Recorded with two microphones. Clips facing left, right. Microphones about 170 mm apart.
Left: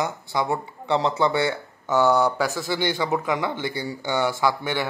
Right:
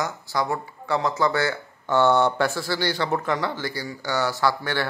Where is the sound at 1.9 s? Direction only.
5° left (ahead or behind).